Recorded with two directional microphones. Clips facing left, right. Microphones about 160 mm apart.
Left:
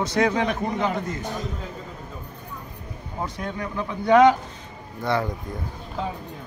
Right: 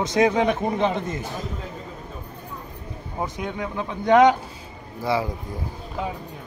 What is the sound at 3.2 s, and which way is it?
Speech, 20° right (ahead or behind).